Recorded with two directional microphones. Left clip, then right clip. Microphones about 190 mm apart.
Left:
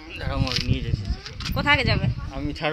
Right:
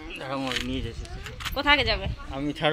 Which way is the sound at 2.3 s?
5° right (ahead or behind).